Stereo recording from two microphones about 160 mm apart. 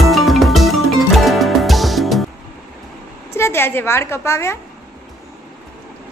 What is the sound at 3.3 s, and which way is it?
A woman's voice, 15° left (ahead or behind).